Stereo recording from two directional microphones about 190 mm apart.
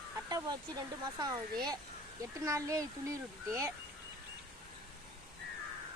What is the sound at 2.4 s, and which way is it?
A woman's voice, 15° right (ahead or behind).